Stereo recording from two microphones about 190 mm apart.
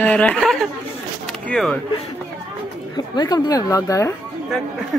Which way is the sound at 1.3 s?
5° left (ahead or behind).